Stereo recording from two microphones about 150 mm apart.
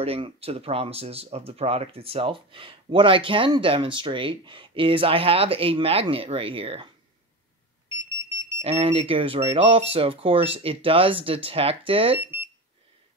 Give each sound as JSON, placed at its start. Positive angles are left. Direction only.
{"t": 0.0, "sound": "speech", "side_deg": -40}
{"t": 8.6, "sound": "speech", "side_deg": -40}
{"t": 12.2, "sound": "speech", "side_deg": -15}